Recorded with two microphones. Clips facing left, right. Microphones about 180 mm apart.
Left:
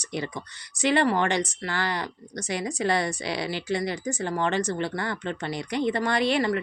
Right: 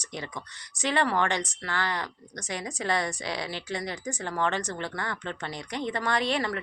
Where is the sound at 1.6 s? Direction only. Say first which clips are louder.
Left 2 dB; 35° left (ahead or behind).